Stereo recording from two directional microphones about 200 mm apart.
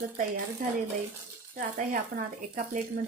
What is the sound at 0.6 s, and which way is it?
Speech, 45° right (ahead or behind).